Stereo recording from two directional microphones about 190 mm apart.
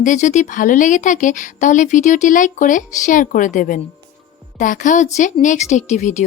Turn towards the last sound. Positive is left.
turn(degrees=40)  # may be behind; listen again after turning